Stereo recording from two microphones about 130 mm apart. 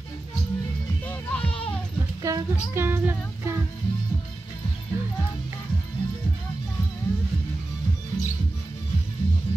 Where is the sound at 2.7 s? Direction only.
15° right (ahead or behind).